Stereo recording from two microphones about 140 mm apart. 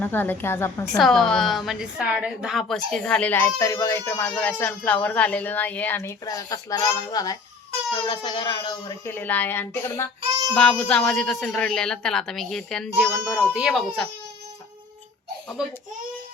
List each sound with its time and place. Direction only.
0.0 s a child's voice: 15° left (ahead or behind)
0.9 s a woman's voice: 5° left (ahead or behind); by 7.3 s 25° left (ahead or behind)
8.0 s speech: 35° left (ahead or behind)
9.0 s a child's voice: 10° left (ahead or behind)
15.6 s a child's voice: 5° right (ahead or behind)